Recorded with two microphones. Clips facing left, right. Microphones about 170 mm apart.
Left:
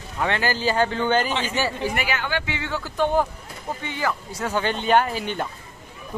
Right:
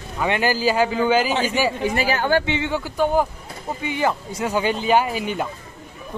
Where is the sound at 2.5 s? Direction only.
20° right (ahead or behind).